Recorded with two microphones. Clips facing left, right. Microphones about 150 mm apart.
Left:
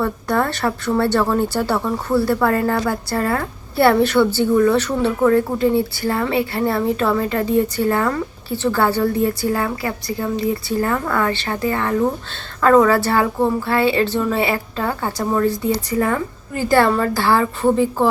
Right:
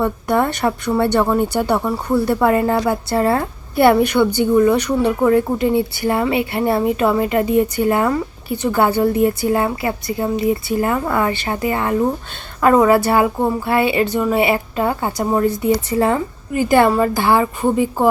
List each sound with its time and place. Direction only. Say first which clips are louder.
0.0 s a woman's voice: right 2 dB; 20° right (ahead or behind)